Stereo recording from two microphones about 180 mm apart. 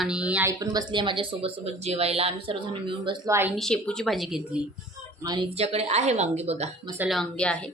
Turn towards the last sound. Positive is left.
turn(degrees=5)  # may be behind; listen again after turning